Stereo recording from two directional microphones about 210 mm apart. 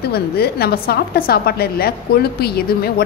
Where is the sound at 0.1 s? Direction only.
50° left (ahead or behind).